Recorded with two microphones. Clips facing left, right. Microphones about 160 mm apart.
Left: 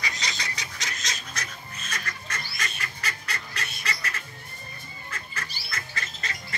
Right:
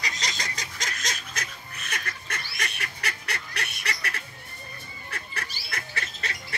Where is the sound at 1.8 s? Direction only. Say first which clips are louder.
Right 1 dB; 60° right (ahead or behind).